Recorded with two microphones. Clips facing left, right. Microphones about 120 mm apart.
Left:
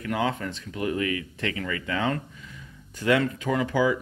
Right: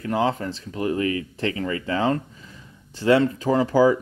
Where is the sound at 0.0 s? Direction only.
30° right (ahead or behind).